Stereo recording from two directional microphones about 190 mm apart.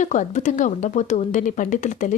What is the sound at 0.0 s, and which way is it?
A woman's voice, 40° left (ahead or behind).